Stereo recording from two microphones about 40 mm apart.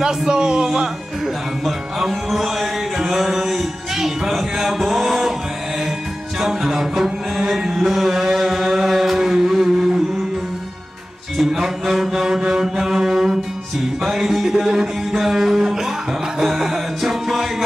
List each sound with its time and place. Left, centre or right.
0.0 s speech: centre
0.7 s music: centre
4.3 s a sound: centre
6.4 s music: centre
11.3 s mantra: centre
14.0 s music: centre